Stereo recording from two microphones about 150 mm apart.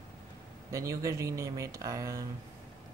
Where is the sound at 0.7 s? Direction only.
20° right (ahead or behind).